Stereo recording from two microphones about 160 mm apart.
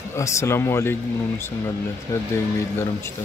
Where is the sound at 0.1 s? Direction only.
15° left (ahead or behind).